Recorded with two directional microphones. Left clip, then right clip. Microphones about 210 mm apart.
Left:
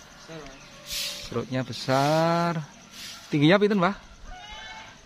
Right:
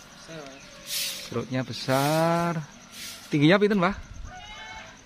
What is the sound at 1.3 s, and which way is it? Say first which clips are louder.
A man's voice: even; 5° left (ahead or behind).